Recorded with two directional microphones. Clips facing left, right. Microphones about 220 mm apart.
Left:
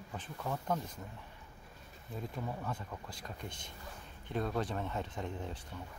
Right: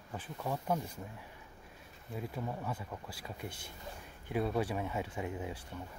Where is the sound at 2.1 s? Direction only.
5° right (ahead or behind).